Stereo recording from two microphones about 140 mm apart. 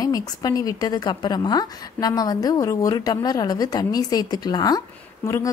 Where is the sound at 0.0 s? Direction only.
25° left (ahead or behind).